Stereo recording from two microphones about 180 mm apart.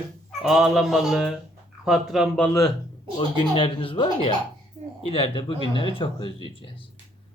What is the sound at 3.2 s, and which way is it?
Speech, 30° left (ahead or behind).